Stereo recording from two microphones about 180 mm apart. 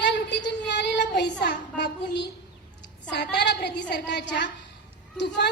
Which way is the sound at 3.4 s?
70° left (ahead or behind).